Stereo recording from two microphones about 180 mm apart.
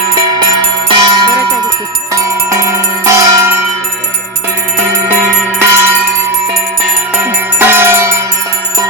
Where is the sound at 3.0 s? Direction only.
15° right (ahead or behind).